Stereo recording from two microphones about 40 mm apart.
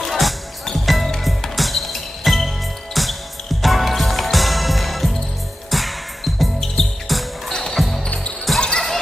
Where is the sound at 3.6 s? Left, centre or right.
Centre.